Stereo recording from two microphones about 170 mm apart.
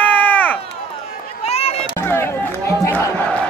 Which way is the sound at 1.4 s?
35° left (ahead or behind).